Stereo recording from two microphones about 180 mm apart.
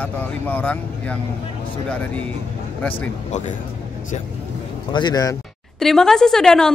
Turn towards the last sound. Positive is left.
turn(degrees=5)  # may be behind; listen again after turning